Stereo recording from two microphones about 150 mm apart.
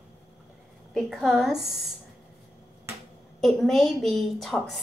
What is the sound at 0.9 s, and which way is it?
A woman's voice, centre (ahead or behind).